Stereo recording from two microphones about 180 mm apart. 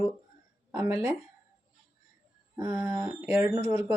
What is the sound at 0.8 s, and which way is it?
Speech, 10° right (ahead or behind).